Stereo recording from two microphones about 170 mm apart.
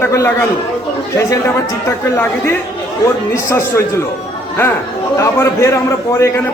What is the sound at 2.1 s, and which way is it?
A man's voice, 15° left (ahead or behind).